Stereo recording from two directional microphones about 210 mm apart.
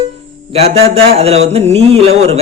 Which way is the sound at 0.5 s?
30° right (ahead or behind).